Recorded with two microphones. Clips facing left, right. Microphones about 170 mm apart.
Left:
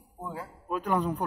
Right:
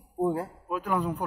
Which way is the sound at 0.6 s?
5° right (ahead or behind).